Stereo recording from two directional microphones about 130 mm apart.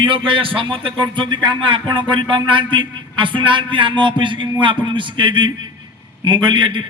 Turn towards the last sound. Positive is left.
turn(degrees=-40)  # may be behind; listen again after turning